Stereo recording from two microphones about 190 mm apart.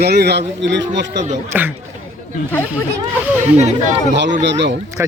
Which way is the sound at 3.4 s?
40° right (ahead or behind).